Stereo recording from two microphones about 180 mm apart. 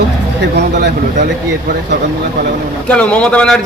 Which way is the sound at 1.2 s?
60° right (ahead or behind).